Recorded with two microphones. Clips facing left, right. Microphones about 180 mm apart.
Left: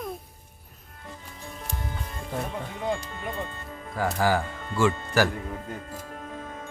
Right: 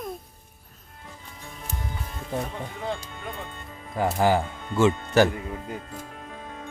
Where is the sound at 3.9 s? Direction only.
20° right (ahead or behind).